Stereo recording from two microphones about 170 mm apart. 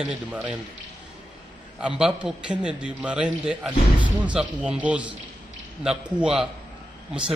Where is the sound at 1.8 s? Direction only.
5° right (ahead or behind).